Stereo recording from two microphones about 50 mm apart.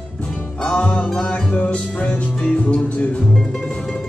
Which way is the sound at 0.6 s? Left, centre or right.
Centre.